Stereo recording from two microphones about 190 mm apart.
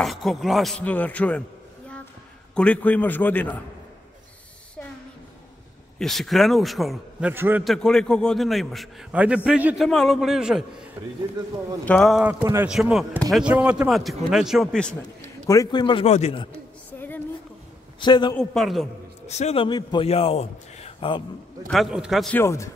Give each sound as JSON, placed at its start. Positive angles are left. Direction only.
{"t": 0.0, "sound": "a man's voice", "side_deg": 0}
{"t": 2.5, "sound": "a man's voice", "side_deg": 5}
{"t": 5.9, "sound": "a man's voice", "side_deg": 0}
{"t": 7.6, "sound": "a man's voice", "side_deg": 0}
{"t": 11.8, "sound": "a man's voice", "side_deg": 5}
{"t": 15.4, "sound": "a man's voice", "side_deg": 15}
{"t": 18.0, "sound": "a man's voice", "side_deg": 25}
{"t": 18.3, "sound": "a man's voice", "side_deg": 0}
{"t": 19.2, "sound": "a man's voice", "side_deg": 35}
{"t": 21.6, "sound": "a man's voice", "side_deg": 0}
{"t": 22.4, "sound": "a man's voice", "side_deg": 15}